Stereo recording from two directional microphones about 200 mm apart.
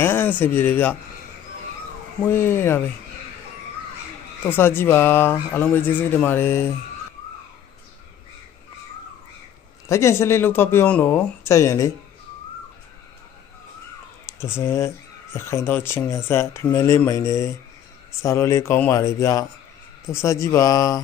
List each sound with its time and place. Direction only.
0.0 s speech: 10° left (ahead or behind)
2.2 s speech: 10° left (ahead or behind)
4.5 s speech: 10° left (ahead or behind)
9.8 s speech: 15° left (ahead or behind)
14.2 s speech: 15° left (ahead or behind)